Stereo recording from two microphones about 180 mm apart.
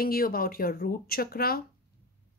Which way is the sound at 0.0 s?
55° left (ahead or behind).